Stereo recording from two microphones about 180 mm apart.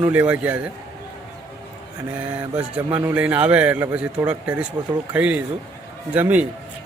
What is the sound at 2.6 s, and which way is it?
A man's voice, 10° right (ahead or behind).